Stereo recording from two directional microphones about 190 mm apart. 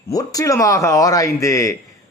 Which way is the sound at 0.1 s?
20° left (ahead or behind).